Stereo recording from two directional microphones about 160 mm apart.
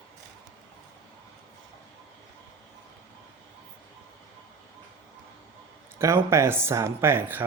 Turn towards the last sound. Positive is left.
turn(degrees=-15)  # may be behind; listen again after turning